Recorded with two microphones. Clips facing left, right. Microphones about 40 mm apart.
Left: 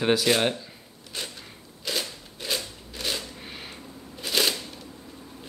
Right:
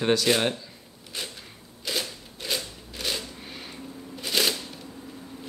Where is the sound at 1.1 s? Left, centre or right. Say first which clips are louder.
Even; centre.